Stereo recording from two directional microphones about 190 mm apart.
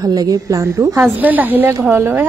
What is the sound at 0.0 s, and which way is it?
Speech, 20° right (ahead or behind).